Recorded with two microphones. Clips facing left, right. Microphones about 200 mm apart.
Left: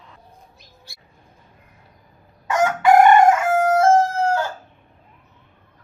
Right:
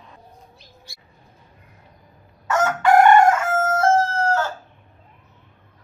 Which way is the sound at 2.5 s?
15° left (ahead or behind).